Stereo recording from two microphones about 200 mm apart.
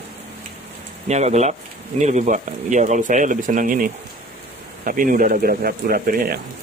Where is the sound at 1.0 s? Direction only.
35° right (ahead or behind).